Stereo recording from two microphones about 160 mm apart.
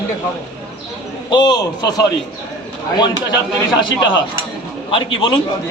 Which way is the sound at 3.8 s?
30° left (ahead or behind).